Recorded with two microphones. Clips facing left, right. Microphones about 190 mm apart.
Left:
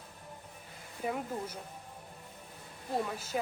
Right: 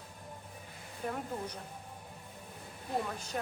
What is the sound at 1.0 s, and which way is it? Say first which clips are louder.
Speech: left 2 dB; 5° left (ahead or behind).